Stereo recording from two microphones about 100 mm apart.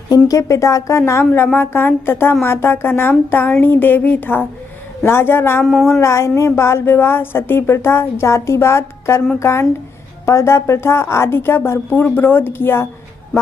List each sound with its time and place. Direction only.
0.1 s a woman's voice: 35° left (ahead or behind)